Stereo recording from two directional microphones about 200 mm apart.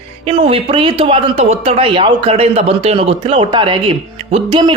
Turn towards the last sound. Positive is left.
turn(degrees=-25)  # may be behind; listen again after turning